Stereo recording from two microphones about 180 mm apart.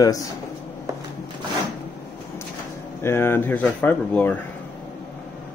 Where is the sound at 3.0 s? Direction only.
15° left (ahead or behind).